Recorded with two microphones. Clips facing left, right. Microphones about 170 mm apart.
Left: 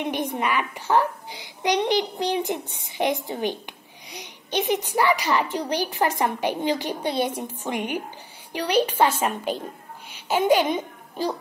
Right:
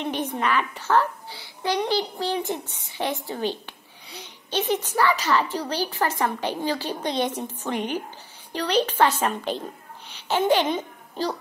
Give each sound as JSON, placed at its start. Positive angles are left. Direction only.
{"t": 0.0, "sound": "a woman's voice", "side_deg": 10}